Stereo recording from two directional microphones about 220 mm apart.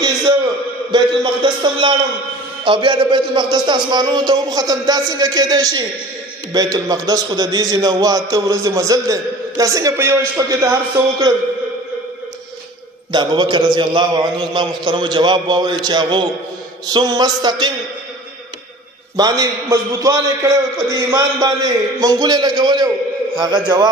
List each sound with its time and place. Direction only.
0.9 s a sound: 20° right (ahead or behind)
2.6 s a man's voice: 20° right (ahead or behind)
13.1 s a man's voice: 20° right (ahead or behind)
19.1 s a man's voice: 15° right (ahead or behind)